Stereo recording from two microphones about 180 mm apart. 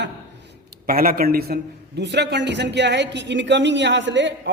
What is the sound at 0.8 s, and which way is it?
A man's voice, 55° right (ahead or behind).